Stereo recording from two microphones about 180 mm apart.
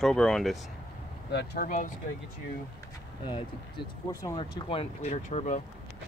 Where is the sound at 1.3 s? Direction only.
55° left (ahead or behind).